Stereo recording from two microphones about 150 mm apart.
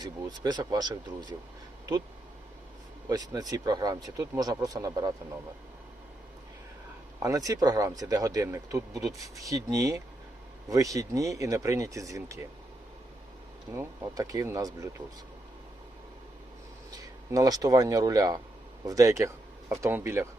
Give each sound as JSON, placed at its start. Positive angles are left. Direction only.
{"t": 0.0, "sound": "speech", "side_deg": -30}
{"t": 3.1, "sound": "speech", "side_deg": -25}
{"t": 7.2, "sound": "speech", "side_deg": -25}
{"t": 13.7, "sound": "speech", "side_deg": -20}
{"t": 17.3, "sound": "speech", "side_deg": -25}